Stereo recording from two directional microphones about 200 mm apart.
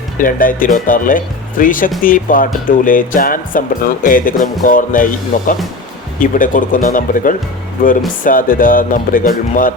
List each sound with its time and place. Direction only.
0.2 s speech: 45° left (ahead or behind)